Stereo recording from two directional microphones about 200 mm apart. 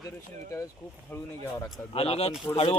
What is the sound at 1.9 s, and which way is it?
Speech, 30° left (ahead or behind).